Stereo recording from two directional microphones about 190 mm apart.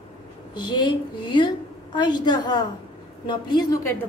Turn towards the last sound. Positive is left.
turn(degrees=20)  # may be behind; listen again after turning